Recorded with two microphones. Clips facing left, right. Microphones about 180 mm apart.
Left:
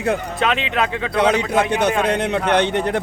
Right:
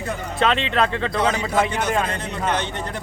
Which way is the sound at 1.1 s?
65° left (ahead or behind).